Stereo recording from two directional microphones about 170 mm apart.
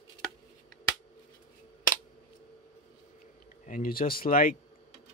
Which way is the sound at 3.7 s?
55° left (ahead or behind).